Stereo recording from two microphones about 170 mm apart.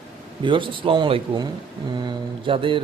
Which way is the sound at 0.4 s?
30° right (ahead or behind).